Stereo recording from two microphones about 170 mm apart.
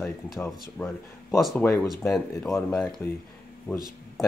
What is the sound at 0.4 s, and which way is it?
Speech, 10° left (ahead or behind).